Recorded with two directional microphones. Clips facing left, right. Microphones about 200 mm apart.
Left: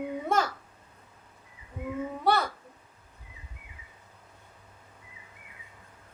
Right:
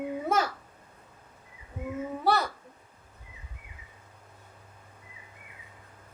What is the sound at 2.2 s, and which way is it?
Speech, centre (ahead or behind).